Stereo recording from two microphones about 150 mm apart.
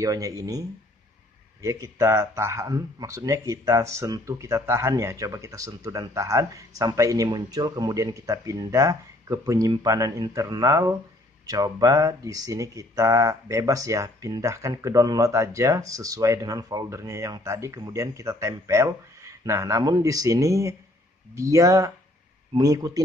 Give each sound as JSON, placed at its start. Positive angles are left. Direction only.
{"t": 0.0, "sound": "speech", "side_deg": -25}